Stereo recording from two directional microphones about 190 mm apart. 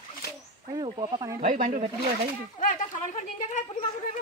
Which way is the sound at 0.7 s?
25° right (ahead or behind).